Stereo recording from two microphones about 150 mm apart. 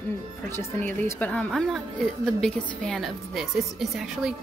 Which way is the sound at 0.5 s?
15° left (ahead or behind).